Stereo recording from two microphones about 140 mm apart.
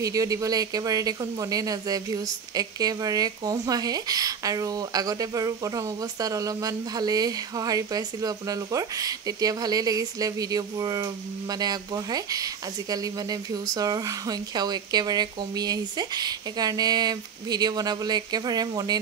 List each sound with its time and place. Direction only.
0.0 s speech: 25° right (ahead or behind)